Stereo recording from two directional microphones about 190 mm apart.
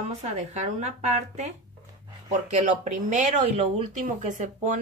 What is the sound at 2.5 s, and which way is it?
Speech, 40° right (ahead or behind).